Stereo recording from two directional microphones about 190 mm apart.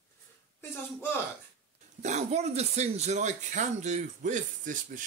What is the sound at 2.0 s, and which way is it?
Speech, 35° right (ahead or behind).